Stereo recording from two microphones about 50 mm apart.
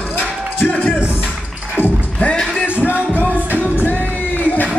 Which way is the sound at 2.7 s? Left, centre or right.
Left.